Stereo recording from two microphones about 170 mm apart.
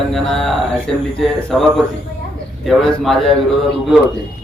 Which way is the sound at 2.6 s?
Centre (ahead or behind).